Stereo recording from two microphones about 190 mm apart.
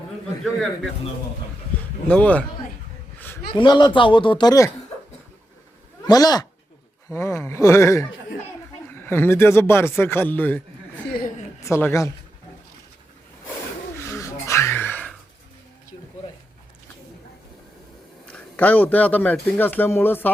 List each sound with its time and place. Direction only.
2.0 s a man's voice: 5° left (ahead or behind)
3.5 s speech: 25° left (ahead or behind)
6.1 s a man's voice: 20° left (ahead or behind)
11.6 s a man's voice: 15° left (ahead or behind)
14.0 s a sound: 15° left (ahead or behind)
18.3 s a man's voice: 5° left (ahead or behind)